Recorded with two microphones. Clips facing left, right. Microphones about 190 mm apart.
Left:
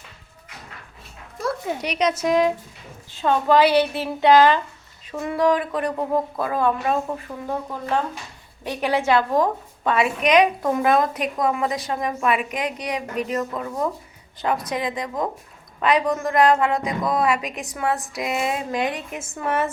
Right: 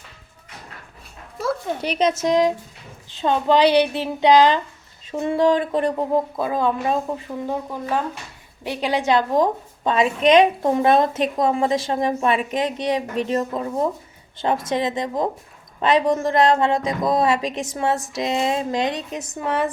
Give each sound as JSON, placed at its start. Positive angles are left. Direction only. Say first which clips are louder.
{"t": 1.8, "sound": "a woman's voice", "louder": "right 2 dB", "side_deg": -30}